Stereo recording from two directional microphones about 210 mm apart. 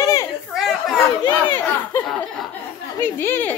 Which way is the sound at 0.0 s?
15° left (ahead or behind).